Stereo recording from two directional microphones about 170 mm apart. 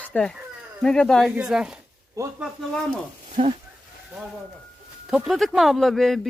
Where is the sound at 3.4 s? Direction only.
30° right (ahead or behind).